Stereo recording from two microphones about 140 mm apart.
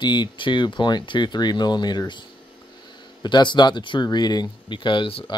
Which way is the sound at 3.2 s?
35° left (ahead or behind).